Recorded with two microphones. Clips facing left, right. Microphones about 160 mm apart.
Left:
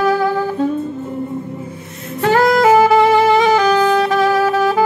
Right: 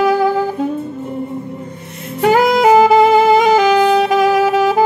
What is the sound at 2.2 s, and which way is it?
Music, 15° right (ahead or behind).